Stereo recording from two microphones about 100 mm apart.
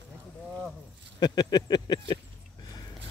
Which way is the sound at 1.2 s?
45° left (ahead or behind).